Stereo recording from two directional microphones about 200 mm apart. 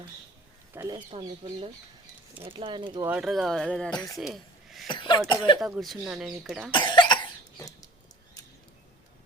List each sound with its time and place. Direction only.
0.7 s speech: 15° right (ahead or behind)
0.9 s speech: 25° right (ahead or behind)
3.1 s speech: centre (ahead or behind)
3.9 s a man's voice: 15° left (ahead or behind)
4.2 s speech: centre (ahead or behind)
4.9 s speech: 20° left (ahead or behind)
5.5 s speech: centre (ahead or behind)
6.7 s cough: 25° left (ahead or behind)